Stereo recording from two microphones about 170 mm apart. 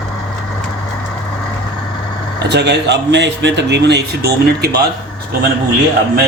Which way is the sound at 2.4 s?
85° right.